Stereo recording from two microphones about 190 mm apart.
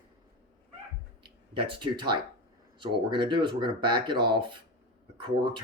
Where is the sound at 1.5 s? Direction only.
25° right (ahead or behind).